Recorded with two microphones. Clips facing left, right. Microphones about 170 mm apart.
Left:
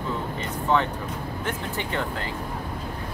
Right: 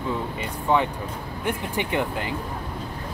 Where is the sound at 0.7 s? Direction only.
15° right (ahead or behind).